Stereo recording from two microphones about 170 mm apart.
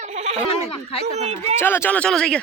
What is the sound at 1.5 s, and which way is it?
Speech, 15° left (ahead or behind).